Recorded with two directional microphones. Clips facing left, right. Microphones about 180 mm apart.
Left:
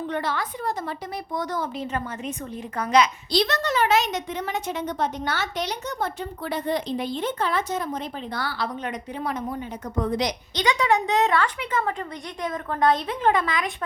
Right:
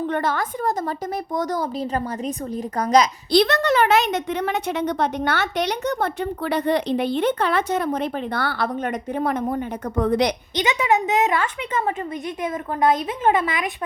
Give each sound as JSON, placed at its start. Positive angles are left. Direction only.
{"t": 0.1, "sound": "a woman's voice", "side_deg": -50}
{"t": 3.3, "sound": "a woman's voice", "side_deg": -55}
{"t": 10.5, "sound": "a woman's voice", "side_deg": -20}